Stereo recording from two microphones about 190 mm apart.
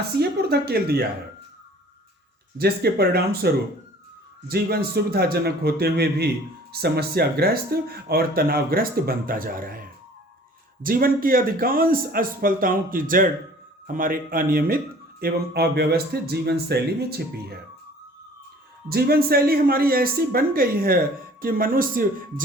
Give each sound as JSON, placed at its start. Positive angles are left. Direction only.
{"t": 0.2, "sound": "speech", "side_deg": -55}
{"t": 2.6, "sound": "speech", "side_deg": -55}
{"t": 10.8, "sound": "speech", "side_deg": -50}
{"t": 18.9, "sound": "speech", "side_deg": -55}